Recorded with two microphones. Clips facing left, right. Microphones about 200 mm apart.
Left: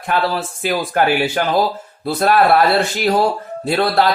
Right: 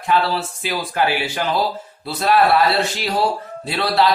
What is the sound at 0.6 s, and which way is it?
Speech, 50° left (ahead or behind).